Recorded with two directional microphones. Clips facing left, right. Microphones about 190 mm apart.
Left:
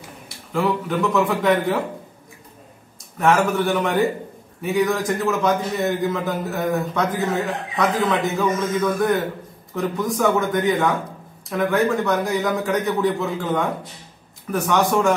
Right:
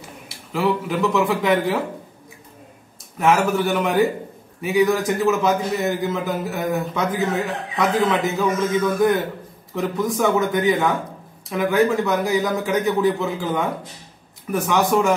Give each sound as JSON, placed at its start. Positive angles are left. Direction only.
{"t": 0.5, "sound": "a man's voice", "side_deg": 0}
{"t": 3.2, "sound": "a man's voice", "side_deg": 0}